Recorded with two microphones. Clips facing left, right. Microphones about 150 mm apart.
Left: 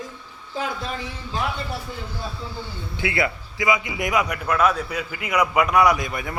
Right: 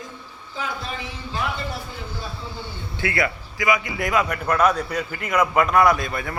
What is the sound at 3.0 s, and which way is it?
A man's voice, 20° left (ahead or behind).